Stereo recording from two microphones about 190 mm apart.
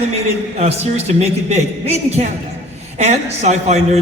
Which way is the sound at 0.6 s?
35° right (ahead or behind).